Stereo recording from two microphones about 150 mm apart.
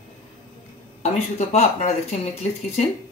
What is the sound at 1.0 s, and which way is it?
Speech, 45° left (ahead or behind).